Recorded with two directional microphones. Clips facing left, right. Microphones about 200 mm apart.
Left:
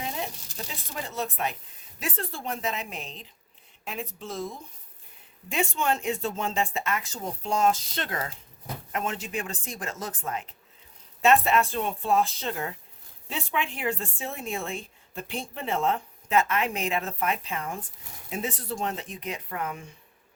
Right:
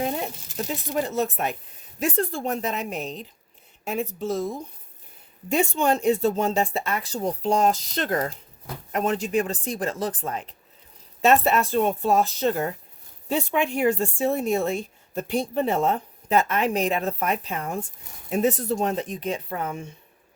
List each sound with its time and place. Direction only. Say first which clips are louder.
1.0 s a woman's voice: right 6 dB; 45° right (ahead or behind)
5.5 s speech: right 5 dB; 35° right (ahead or behind)